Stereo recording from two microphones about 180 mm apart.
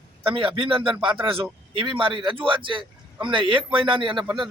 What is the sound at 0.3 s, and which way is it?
Speech, 30° right (ahead or behind).